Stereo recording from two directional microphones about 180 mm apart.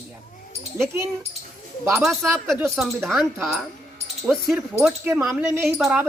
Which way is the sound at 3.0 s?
Centre (ahead or behind).